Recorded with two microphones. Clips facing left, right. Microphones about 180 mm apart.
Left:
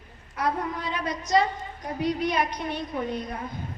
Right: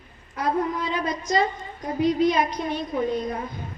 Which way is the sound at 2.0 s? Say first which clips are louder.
Right 5 dB; 65° left (ahead or behind).